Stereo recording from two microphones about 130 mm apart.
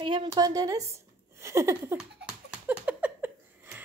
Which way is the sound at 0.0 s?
40° right (ahead or behind).